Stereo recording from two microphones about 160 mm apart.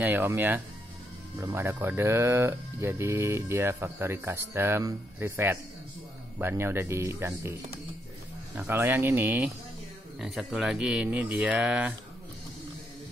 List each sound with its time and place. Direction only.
0.0 s speech: 10° right (ahead or behind)
8.6 s speech: 15° right (ahead or behind)